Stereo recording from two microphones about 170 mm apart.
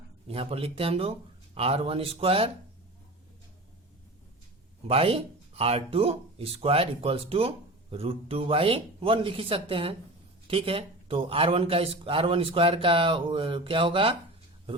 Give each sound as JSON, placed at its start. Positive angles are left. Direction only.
{"t": 0.3, "sound": "speech", "side_deg": -35}
{"t": 4.9, "sound": "speech", "side_deg": -35}